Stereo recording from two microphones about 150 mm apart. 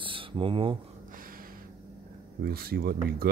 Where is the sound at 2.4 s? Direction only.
90° right.